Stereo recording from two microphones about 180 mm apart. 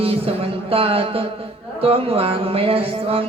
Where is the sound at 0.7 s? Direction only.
30° right (ahead or behind).